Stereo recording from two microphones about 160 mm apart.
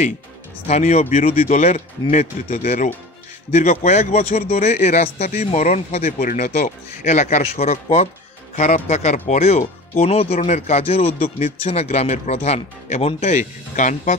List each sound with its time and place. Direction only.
0.7 s speech: 45° left (ahead or behind)